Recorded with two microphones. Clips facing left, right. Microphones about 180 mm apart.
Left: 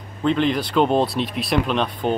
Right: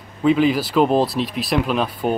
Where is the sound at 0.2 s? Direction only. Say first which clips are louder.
Right 3 dB; 5° right (ahead or behind).